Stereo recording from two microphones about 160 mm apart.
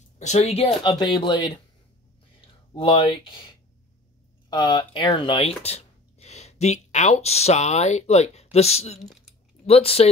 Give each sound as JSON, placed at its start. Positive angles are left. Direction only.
{"t": 0.2, "sound": "speech", "side_deg": 45}
{"t": 0.8, "sound": "speech", "side_deg": 25}
{"t": 2.7, "sound": "speech", "side_deg": 30}
{"t": 4.5, "sound": "speech", "side_deg": 30}